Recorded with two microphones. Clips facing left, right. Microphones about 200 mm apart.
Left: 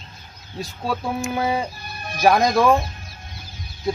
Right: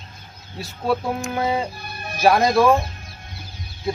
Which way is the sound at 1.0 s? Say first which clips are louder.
Even; centre (ahead or behind).